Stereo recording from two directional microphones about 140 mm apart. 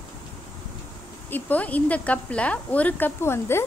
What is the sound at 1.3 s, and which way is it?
Speech, 10° left (ahead or behind).